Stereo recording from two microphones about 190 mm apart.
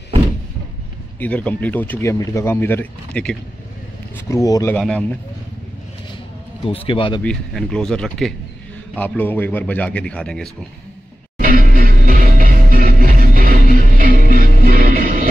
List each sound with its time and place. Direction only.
1.2 s speech: 5° left (ahead or behind)
4.3 s speech: 15° left (ahead or behind)
4.7 s speech: 5° left (ahead or behind)
6.6 s speech: 30° left (ahead or behind)
7.2 s speech: 5° left (ahead or behind)
11.3 s music: 45° right (ahead or behind)